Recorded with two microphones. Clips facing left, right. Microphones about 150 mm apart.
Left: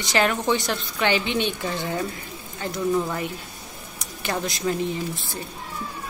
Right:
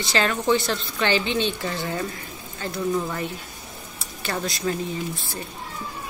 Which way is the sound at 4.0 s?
15° left (ahead or behind).